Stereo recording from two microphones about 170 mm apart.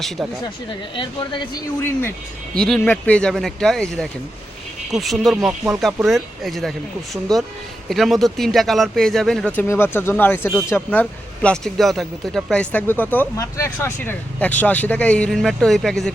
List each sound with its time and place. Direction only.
0.7 s speech: 30° left (ahead or behind)
1.8 s speech: 15° left (ahead or behind)
2.6 s speech: 5° left (ahead or behind)
9.6 s speech: 15° left (ahead or behind)